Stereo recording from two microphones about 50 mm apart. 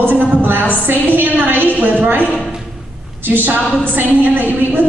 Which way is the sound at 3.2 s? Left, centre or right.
Right.